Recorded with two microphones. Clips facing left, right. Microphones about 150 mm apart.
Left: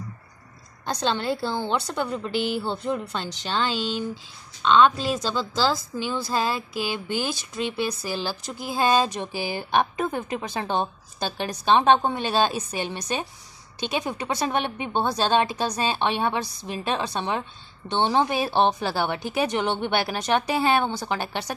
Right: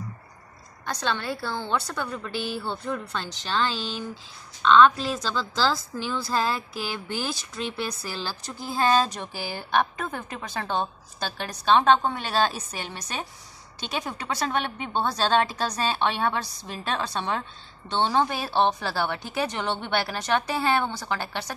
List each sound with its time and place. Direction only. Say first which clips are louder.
0.8 s a woman's voice: left 4 dB; 30° left (ahead or behind)